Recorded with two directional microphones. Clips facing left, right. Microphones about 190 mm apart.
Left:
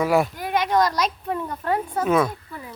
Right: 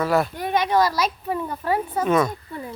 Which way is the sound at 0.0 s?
15° left (ahead or behind).